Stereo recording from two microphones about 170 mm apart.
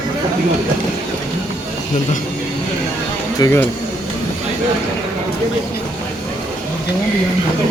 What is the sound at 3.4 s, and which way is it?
Speech, 10° left (ahead or behind).